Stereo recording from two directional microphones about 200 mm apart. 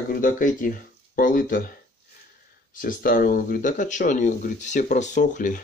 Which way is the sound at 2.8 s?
45° left (ahead or behind).